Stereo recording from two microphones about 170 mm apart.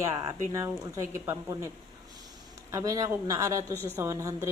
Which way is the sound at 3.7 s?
10° left (ahead or behind).